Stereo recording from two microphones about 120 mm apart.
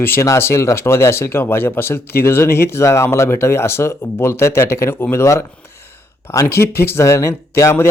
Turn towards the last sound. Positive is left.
turn(degrees=20)  # may be behind; listen again after turning